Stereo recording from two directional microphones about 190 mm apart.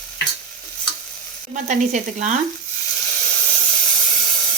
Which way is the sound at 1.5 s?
40° right (ahead or behind).